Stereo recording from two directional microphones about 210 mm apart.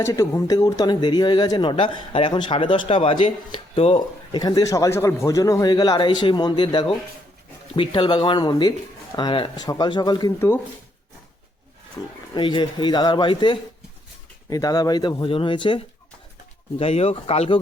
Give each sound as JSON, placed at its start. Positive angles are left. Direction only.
{"t": 0.0, "sound": "speech", "side_deg": 15}
{"t": 12.3, "sound": "speech", "side_deg": 25}